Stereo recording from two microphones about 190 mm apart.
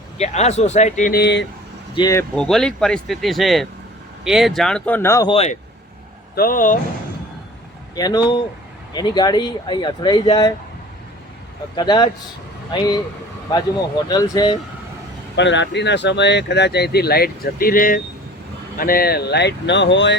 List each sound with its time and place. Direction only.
0.2 s speech: 35° left (ahead or behind)
1.1 s speech: 65° left (ahead or behind)
2.0 s speech: 15° left (ahead or behind)
2.3 s speech: 5° left (ahead or behind)
5.3 s speech: 35° left (ahead or behind)
6.3 s speech: 50° left (ahead or behind)
7.9 s speech: 20° left (ahead or behind)
11.8 s speech: 25° left (ahead or behind)
14.1 s speech: 20° left (ahead or behind)
15.4 s speech: 70° left (ahead or behind)